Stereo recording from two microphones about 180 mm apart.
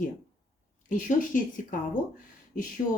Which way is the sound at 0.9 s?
45° left (ahead or behind).